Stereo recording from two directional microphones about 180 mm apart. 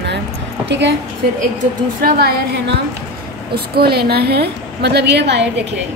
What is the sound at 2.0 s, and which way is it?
A woman's voice, 60° right (ahead or behind).